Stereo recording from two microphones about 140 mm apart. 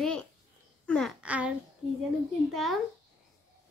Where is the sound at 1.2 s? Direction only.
10° right (ahead or behind).